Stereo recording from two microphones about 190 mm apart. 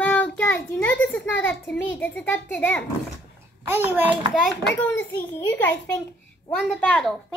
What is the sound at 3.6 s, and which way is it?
Speech, 10° right (ahead or behind).